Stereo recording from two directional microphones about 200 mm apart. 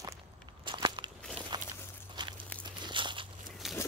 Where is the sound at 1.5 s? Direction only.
20° right (ahead or behind).